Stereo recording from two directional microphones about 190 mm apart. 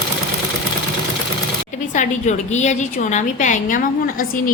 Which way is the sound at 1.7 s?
40° left (ahead or behind).